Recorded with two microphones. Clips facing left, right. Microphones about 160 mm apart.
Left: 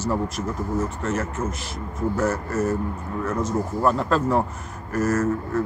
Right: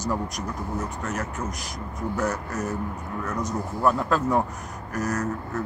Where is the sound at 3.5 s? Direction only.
Centre (ahead or behind).